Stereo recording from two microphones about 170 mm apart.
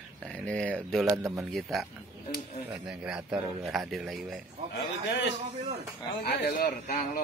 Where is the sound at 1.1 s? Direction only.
20° right (ahead or behind).